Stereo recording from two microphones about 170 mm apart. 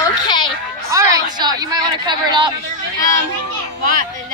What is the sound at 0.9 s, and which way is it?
A woman's voice, 20° right (ahead or behind).